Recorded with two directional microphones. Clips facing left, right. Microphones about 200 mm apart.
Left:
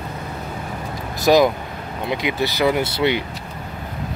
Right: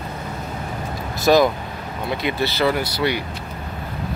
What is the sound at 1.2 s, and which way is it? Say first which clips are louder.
Speech: left 1 dB; 15° left (ahead or behind).